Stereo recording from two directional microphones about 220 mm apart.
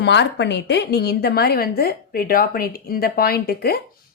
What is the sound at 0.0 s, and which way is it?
Speech, 50° left (ahead or behind).